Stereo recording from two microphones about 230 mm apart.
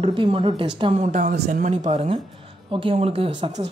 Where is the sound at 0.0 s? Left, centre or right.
Right.